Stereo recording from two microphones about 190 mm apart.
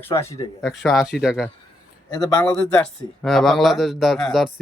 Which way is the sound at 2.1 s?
20° left (ahead or behind).